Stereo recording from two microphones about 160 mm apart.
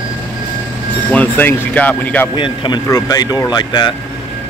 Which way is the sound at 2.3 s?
30° left (ahead or behind).